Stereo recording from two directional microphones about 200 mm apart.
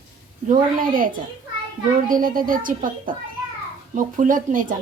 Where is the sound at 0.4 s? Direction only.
45° right (ahead or behind).